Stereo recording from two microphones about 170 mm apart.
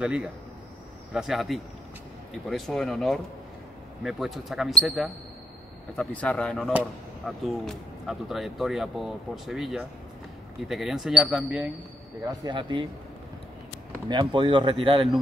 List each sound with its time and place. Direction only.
0.0 s speech: 5° right (ahead or behind)
12.3 s speech: 25° right (ahead or behind)
14.0 s speech: 25° right (ahead or behind)